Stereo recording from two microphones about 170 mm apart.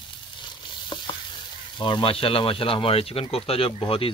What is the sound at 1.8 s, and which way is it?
Speech, 30° left (ahead or behind).